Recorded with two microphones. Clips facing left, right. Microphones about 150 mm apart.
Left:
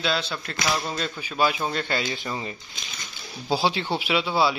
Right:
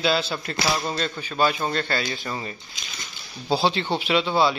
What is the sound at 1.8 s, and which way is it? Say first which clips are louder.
Speech: even; 20° left (ahead or behind).